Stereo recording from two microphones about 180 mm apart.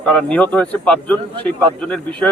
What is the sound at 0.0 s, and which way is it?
A man's voice, 5° left (ahead or behind).